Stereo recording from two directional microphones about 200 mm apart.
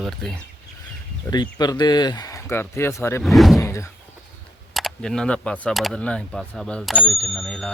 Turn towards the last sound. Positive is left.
turn(degrees=0)  # may be behind; listen again after turning